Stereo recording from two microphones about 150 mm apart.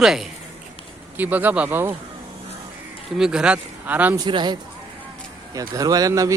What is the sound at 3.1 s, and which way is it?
Speech, 5° right (ahead or behind).